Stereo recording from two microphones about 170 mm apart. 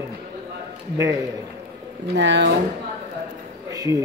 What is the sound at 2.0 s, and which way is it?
Speech, 90° right.